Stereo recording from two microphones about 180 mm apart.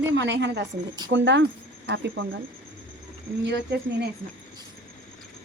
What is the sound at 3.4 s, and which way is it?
Speech, 75° right (ahead or behind).